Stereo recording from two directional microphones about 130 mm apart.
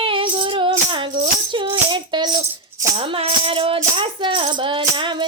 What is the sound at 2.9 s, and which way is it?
Music, 45° right (ahead or behind).